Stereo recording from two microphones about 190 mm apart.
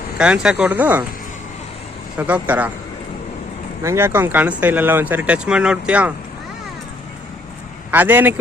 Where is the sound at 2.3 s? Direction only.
10° right (ahead or behind).